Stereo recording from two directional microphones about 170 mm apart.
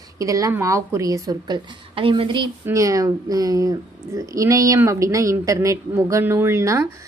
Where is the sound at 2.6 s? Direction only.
20° right (ahead or behind).